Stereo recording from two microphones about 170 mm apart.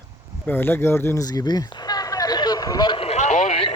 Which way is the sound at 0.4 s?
15° left (ahead or behind).